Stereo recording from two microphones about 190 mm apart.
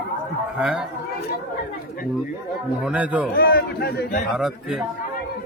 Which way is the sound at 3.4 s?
50° left (ahead or behind).